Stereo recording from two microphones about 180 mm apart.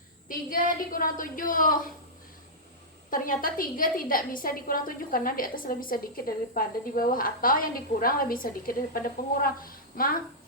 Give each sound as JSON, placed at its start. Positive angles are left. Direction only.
{"t": 0.3, "sound": "a woman's voice", "side_deg": 50}
{"t": 3.1, "sound": "a woman's voice", "side_deg": 50}